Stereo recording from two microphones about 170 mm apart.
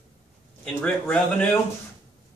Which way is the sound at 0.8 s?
5° left (ahead or behind).